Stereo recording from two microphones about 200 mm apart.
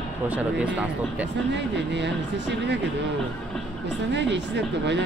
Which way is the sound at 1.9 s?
60° right (ahead or behind).